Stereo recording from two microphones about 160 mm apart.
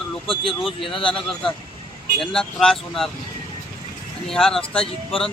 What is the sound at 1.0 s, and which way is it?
A man's voice, 5° left (ahead or behind).